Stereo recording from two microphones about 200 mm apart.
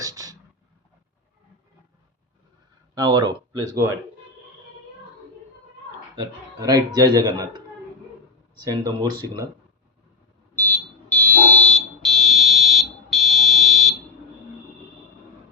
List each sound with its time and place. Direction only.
0.0 s a sound: 15° right (ahead or behind)
2.9 s speech: 20° right (ahead or behind)
6.1 s a man's voice: 20° right (ahead or behind)
8.6 s a man's voice: 20° right (ahead or behind)
10.5 s fire alarm: 10° left (ahead or behind)